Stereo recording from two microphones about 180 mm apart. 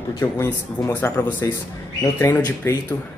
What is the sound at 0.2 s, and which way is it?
A man's voice, 15° left (ahead or behind).